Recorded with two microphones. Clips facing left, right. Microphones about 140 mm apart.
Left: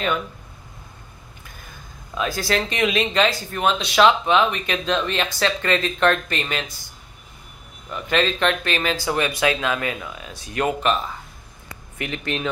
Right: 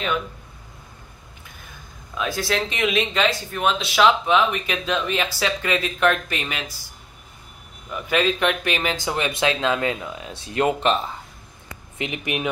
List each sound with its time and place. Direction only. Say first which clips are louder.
2.1 s speech: left 1 dB; centre (ahead or behind)
8.1 s speech: even; 10° right (ahead or behind); by 11.1 s 25° right (ahead or behind)
12.0 s speech: even; 15° right (ahead or behind)